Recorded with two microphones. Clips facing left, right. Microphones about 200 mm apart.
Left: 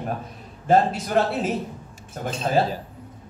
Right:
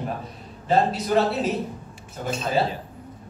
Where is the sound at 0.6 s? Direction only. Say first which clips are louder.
Left 2 dB; 50° left (ahead or behind).